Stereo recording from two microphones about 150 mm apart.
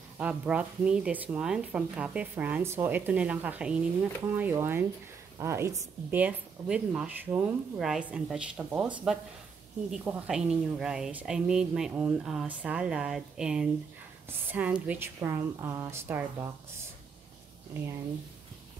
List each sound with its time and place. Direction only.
0.2 s a woman's voice: 10° right (ahead or behind)